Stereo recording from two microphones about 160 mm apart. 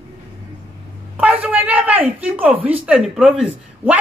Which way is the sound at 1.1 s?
10° right (ahead or behind).